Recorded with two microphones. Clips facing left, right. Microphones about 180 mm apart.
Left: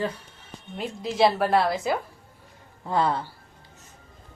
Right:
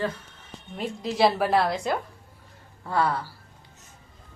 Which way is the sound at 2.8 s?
20° left (ahead or behind).